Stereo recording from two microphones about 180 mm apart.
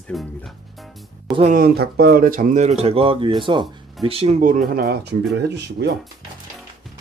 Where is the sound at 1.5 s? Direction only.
60° right (ahead or behind).